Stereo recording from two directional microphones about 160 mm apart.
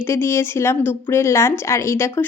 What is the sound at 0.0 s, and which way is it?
A woman's voice, 15° left (ahead or behind).